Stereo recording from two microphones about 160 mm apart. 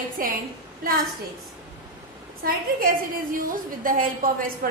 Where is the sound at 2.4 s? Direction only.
65° right (ahead or behind).